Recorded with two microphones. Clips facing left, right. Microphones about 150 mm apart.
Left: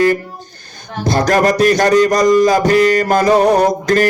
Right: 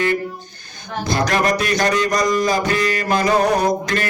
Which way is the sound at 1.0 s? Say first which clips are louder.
Left 6 dB; 40° left (ahead or behind).